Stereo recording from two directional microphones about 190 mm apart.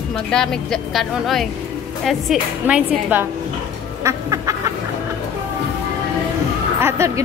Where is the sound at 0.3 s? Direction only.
5° left (ahead or behind).